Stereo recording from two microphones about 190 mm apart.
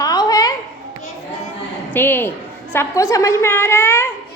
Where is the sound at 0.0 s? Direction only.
20° left (ahead or behind).